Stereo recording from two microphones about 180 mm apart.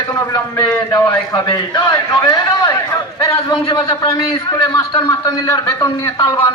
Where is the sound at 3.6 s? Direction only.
25° left (ahead or behind).